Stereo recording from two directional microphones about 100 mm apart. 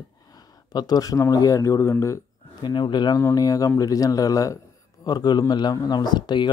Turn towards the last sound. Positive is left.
turn(degrees=50)  # may be behind; listen again after turning